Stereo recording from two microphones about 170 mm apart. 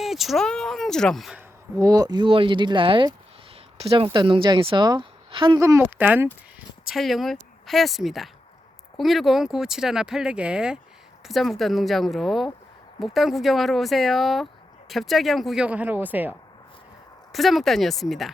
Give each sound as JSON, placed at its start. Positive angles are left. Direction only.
{"t": 0.0, "sound": "speech", "side_deg": 0}
{"t": 1.4, "sound": "speech", "side_deg": -15}
{"t": 5.5, "sound": "speech", "side_deg": -15}
{"t": 17.3, "sound": "speech", "side_deg": 0}